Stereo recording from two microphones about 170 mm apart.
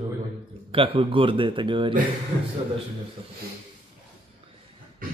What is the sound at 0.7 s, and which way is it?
A man's voice, 30° right (ahead or behind).